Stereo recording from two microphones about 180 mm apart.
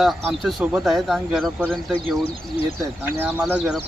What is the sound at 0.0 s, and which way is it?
Speech, centre (ahead or behind).